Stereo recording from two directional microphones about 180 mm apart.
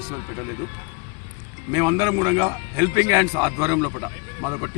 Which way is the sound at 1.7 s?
20° right (ahead or behind).